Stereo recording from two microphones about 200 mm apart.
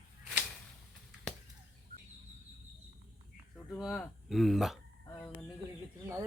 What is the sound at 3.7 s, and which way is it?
Speech, 5° left (ahead or behind).